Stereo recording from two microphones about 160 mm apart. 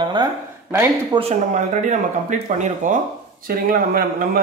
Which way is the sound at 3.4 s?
65° right (ahead or behind).